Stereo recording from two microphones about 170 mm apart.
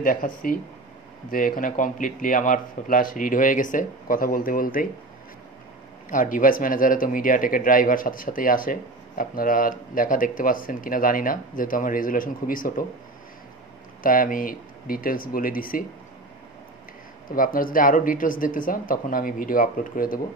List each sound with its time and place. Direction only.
0.0 s speech: 55° left (ahead or behind)
6.0 s speech: 50° left (ahead or behind)
14.0 s speech: 55° left (ahead or behind)
17.3 s speech: 55° left (ahead or behind)